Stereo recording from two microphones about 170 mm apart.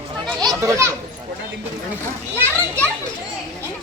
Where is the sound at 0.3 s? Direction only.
20° right (ahead or behind).